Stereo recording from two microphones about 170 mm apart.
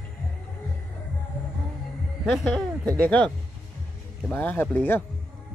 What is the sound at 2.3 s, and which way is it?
Speech, centre (ahead or behind).